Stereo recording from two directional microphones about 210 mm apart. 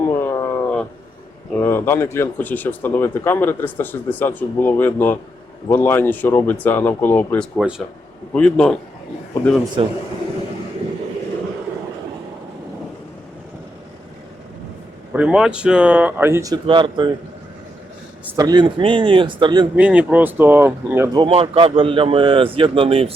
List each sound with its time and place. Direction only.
0.0 s a sound: 10° left (ahead or behind)
1.5 s a man's voice: 10° left (ahead or behind)
15.1 s speech: 5° right (ahead or behind); by 17.1 s 25° right (ahead or behind)
18.3 s speech: 20° right (ahead or behind)
19.7 s speech: 5° right (ahead or behind); by 23.1 s 25° right (ahead or behind)